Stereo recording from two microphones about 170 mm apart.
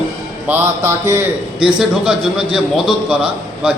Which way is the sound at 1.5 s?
5° right (ahead or behind).